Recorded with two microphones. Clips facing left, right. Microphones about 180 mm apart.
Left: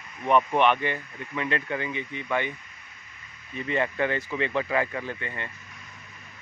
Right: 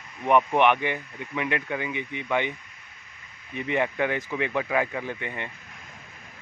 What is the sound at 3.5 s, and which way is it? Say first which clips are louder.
Speech: right 1 dB; 15° right (ahead or behind).